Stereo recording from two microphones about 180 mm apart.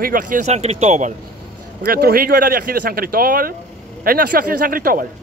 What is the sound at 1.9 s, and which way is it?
Speech, 55° right (ahead or behind).